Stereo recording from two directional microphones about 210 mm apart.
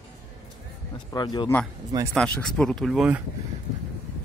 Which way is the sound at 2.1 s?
5° left (ahead or behind).